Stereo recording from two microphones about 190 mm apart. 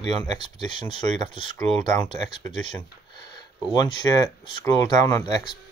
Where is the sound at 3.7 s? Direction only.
20° left (ahead or behind).